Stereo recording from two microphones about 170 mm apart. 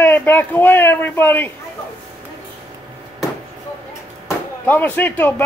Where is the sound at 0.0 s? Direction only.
10° left (ahead or behind).